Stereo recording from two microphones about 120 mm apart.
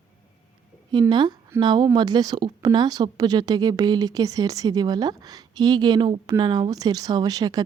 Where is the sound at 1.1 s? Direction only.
40° right (ahead or behind).